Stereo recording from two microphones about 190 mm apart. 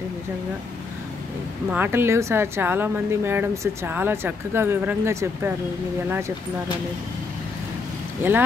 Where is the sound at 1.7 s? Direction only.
10° right (ahead or behind).